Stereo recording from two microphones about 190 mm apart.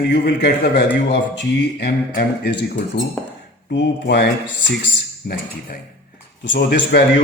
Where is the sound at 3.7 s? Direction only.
65° left (ahead or behind).